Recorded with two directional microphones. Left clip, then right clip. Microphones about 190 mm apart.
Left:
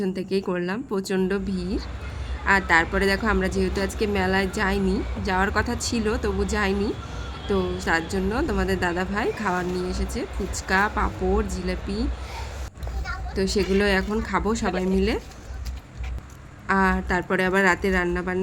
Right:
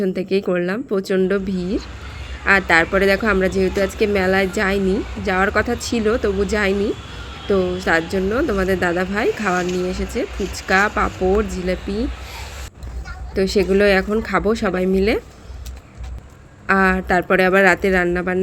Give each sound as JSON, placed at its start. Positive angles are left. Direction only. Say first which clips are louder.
{"t": 0.0, "sound": "speech", "louder": "right 6 dB", "side_deg": -20}
{"t": 13.3, "sound": "speech", "louder": "right 7 dB", "side_deg": -15}
{"t": 16.6, "sound": "a woman's voice", "louder": "right 6 dB", "side_deg": -20}